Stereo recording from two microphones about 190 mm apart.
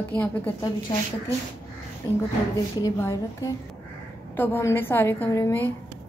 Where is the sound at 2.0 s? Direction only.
20° left (ahead or behind).